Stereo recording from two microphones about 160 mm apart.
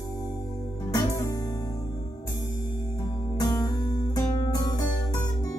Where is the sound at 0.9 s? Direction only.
20° left (ahead or behind).